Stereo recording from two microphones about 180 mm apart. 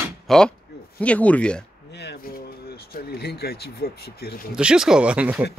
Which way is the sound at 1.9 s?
70° left (ahead or behind).